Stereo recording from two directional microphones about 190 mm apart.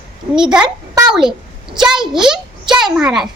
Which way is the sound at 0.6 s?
20° right (ahead or behind).